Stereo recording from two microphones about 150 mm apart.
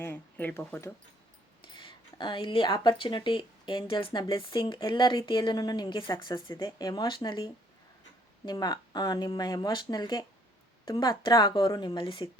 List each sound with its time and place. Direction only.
0.0 s speech: 15° left (ahead or behind)
1.6 s speech: 30° left (ahead or behind)